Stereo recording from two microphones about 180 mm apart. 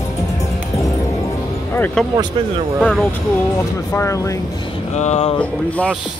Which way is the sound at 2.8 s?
5° left (ahead or behind).